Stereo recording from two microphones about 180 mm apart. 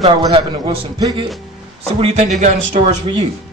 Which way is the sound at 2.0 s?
35° right (ahead or behind).